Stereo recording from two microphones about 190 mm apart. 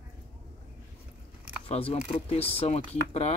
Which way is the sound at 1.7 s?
30° left (ahead or behind).